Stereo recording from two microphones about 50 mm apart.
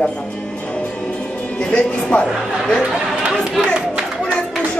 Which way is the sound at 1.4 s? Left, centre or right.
Left.